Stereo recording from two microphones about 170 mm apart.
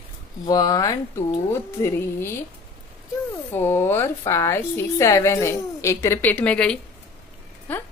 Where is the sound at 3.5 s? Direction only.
15° left (ahead or behind).